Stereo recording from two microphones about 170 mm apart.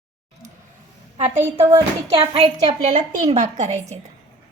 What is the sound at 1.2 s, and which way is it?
A woman's voice, 40° right (ahead or behind).